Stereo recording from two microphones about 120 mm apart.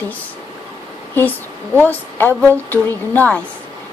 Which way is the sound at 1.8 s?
15° left (ahead or behind).